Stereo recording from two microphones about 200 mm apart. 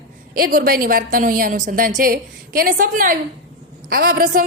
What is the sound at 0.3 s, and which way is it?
A woman's voice, 45° right (ahead or behind).